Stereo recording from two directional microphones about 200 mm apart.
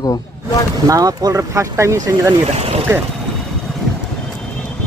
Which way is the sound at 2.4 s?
30° right (ahead or behind).